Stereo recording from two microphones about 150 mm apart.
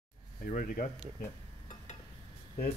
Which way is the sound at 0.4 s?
65° left (ahead or behind).